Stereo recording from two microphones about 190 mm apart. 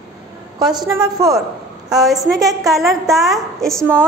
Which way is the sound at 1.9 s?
Centre (ahead or behind).